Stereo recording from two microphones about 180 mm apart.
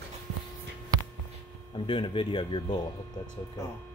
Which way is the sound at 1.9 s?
25° left (ahead or behind).